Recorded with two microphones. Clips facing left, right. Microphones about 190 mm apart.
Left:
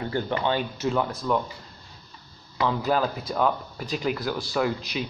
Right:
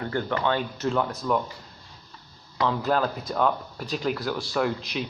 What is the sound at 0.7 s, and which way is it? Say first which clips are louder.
Speech: even; centre (ahead or behind).